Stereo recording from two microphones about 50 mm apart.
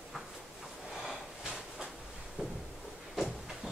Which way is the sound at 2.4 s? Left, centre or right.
Centre.